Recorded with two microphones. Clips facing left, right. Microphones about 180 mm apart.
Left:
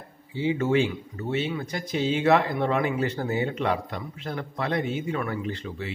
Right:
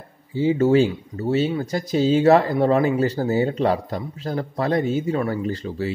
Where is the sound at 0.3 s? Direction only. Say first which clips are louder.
Right 7 dB; 40° right (ahead or behind).